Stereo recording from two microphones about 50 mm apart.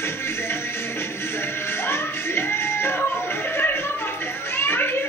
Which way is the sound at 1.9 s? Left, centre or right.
Left.